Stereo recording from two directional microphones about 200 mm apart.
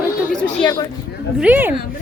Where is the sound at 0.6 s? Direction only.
20° left (ahead or behind).